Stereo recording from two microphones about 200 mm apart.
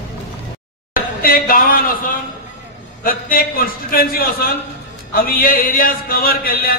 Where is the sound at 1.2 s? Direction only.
45° left (ahead or behind).